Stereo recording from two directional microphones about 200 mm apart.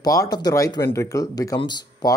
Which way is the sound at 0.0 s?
15° left (ahead or behind).